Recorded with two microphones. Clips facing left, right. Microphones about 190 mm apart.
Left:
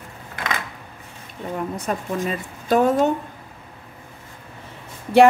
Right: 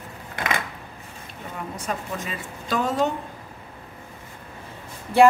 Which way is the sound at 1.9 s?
50° left (ahead or behind).